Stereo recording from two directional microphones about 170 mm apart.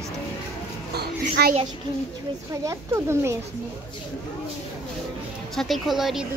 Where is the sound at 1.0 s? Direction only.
65° right (ahead or behind).